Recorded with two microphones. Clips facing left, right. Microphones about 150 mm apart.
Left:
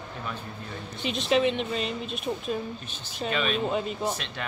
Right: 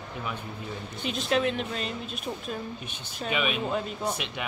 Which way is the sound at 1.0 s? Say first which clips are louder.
Left 3 dB; centre (ahead or behind).